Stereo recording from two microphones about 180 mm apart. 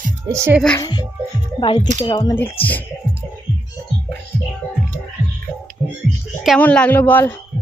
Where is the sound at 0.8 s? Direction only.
25° left (ahead or behind).